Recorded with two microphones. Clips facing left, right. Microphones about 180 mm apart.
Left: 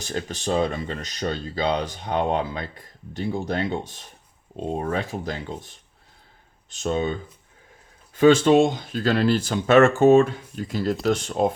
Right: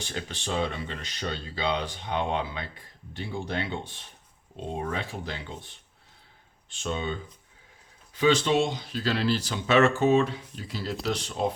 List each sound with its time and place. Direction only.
0.0 s speech: 40° left (ahead or behind)